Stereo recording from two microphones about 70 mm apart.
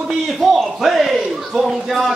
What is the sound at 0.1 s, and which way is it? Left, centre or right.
A man's voice, centre.